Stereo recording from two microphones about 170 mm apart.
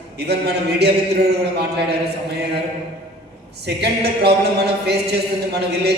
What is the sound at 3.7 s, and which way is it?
Speech, 75° right (ahead or behind).